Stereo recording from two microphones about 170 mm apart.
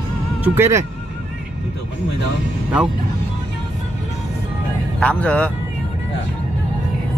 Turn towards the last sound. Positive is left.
turn(degrees=10)  # may be behind; listen again after turning